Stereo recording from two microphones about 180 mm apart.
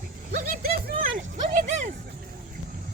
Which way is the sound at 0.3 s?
55° right (ahead or behind).